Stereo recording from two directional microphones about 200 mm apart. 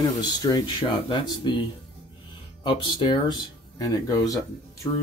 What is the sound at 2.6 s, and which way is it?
Speech, 25° left (ahead or behind).